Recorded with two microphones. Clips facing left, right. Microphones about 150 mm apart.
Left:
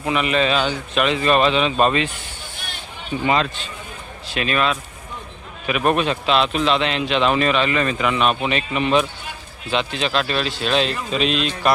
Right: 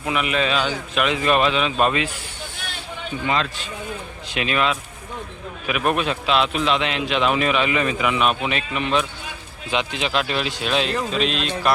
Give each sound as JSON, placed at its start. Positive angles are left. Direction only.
{"t": 0.0, "sound": "a man's voice", "side_deg": -5}
{"t": 4.3, "sound": "speech", "side_deg": -15}
{"t": 5.6, "sound": "a man's voice", "side_deg": -5}
{"t": 9.7, "sound": "speech", "side_deg": -15}